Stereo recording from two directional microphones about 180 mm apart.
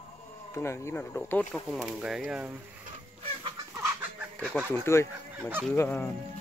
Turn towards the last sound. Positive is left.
turn(degrees=10)  # may be behind; listen again after turning